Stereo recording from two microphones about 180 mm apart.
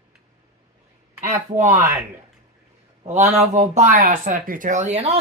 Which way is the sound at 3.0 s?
40° right (ahead or behind).